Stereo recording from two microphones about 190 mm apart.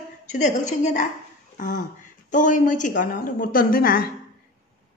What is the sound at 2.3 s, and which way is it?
Speech, 45° left (ahead or behind).